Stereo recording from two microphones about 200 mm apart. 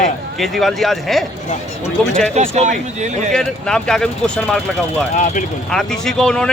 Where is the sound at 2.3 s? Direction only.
35° right (ahead or behind).